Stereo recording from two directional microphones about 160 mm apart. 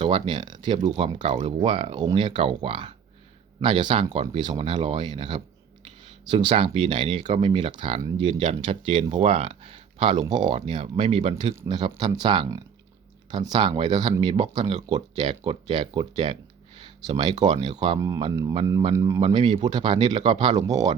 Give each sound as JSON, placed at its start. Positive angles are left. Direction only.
{"t": 0.0, "sound": "speech", "side_deg": -30}